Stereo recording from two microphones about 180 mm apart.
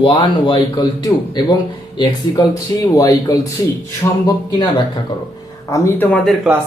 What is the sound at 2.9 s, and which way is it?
Speech, 20° left (ahead or behind).